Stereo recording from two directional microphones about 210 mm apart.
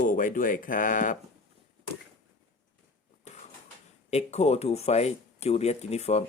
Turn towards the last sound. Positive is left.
turn(degrees=30)  # may be behind; listen again after turning